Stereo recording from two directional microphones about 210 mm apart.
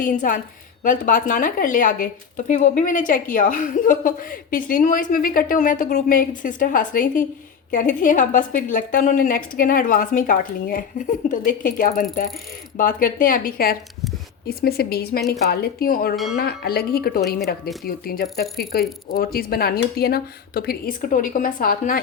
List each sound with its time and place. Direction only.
0.0 s a woman's voice: 40° left (ahead or behind)